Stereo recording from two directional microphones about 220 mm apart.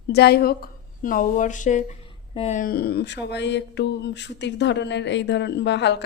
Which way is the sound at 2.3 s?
30° left (ahead or behind).